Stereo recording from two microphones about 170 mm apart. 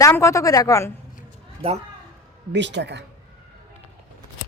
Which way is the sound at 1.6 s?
35° right (ahead or behind).